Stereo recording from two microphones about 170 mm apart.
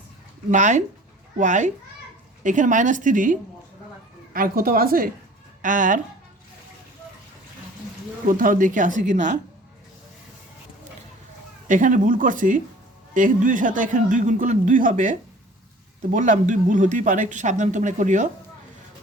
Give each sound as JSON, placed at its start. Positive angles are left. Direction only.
{"t": 0.5, "sound": "speech", "side_deg": -45}
{"t": 4.4, "sound": "a woman's voice", "side_deg": -60}
{"t": 8.3, "sound": "speech", "side_deg": -55}
{"t": 11.7, "sound": "speech", "side_deg": -50}
{"t": 16.1, "sound": "speech", "side_deg": -50}